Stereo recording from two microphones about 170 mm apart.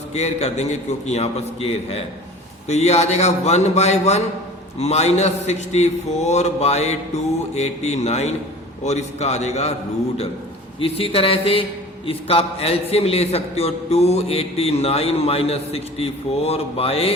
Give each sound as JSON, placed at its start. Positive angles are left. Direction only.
{"t": 0.1, "sound": "a man's voice", "side_deg": 40}
{"t": 10.8, "sound": "a man's voice", "side_deg": 35}